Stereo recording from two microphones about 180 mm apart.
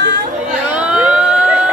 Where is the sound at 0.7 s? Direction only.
5° right (ahead or behind).